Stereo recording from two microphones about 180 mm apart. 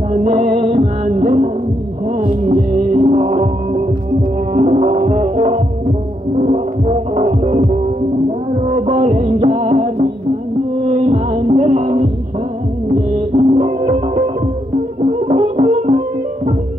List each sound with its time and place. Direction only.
0.1 s music: 45° right (ahead or behind)
13.3 s music: 40° right (ahead or behind)